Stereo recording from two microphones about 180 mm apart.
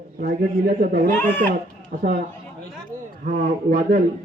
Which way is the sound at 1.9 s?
60° right (ahead or behind).